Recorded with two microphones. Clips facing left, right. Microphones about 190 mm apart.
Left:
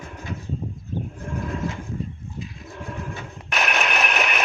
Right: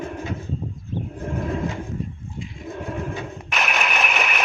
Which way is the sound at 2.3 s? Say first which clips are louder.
Right 1 dB; 25° right (ahead or behind).